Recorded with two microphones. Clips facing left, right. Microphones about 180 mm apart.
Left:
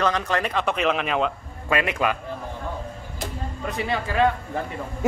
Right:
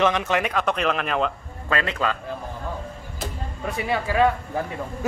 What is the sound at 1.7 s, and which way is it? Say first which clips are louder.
Speech: left 2 dB; 15° left (ahead or behind).